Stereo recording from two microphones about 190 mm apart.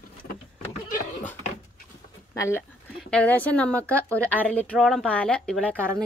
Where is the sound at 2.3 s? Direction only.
15° left (ahead or behind).